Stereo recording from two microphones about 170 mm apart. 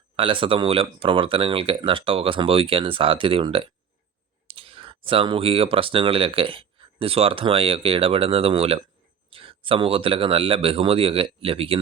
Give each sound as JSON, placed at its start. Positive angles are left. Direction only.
{"t": 0.2, "sound": "speech", "side_deg": -30}